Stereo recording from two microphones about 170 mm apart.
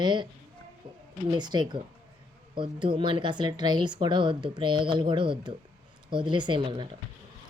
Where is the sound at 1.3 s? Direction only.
25° right (ahead or behind).